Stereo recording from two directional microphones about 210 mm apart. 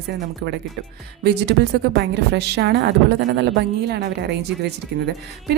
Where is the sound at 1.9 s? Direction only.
55° right (ahead or behind).